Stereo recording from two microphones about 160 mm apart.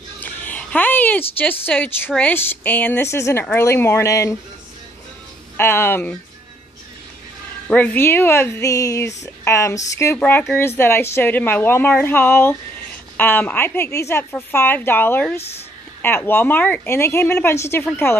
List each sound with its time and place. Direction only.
0.2 s a sound: 10° left (ahead or behind)
1.7 s a woman's voice: 10° left (ahead or behind)
5.6 s a woman's voice: 15° left (ahead or behind)
7.7 s a woman's voice: 10° left (ahead or behind)